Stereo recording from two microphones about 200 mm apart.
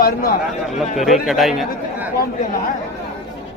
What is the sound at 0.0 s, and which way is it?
Speech, 45° left (ahead or behind).